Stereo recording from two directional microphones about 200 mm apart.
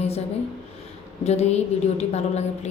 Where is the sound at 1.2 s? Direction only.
35° left (ahead or behind).